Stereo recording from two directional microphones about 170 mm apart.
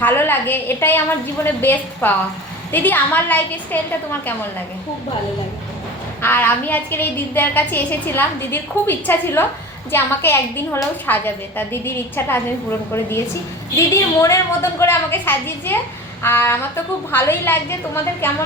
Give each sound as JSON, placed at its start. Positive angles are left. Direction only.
{"t": 0.0, "sound": "a woman's voice", "side_deg": 10}
{"t": 6.2, "sound": "a woman's voice", "side_deg": 10}